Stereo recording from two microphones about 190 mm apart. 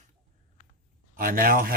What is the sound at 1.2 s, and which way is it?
Speech, 45° right (ahead or behind).